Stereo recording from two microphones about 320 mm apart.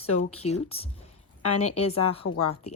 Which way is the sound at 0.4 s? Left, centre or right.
Centre.